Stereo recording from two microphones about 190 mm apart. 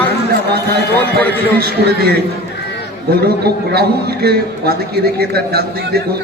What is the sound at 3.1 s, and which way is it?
A man's voice, 55° right (ahead or behind).